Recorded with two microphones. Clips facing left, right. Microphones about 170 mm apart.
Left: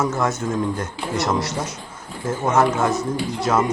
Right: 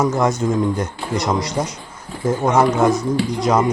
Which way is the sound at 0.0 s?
15° right (ahead or behind).